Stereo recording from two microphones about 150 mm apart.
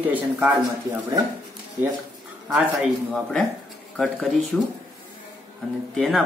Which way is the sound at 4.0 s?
Centre (ahead or behind).